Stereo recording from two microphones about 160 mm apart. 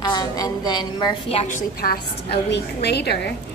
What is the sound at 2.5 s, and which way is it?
Speech, 90° left.